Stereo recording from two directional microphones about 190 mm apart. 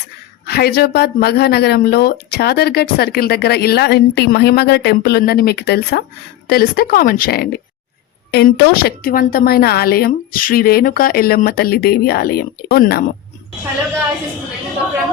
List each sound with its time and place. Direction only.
0.4 s a woman's voice: 55° left (ahead or behind)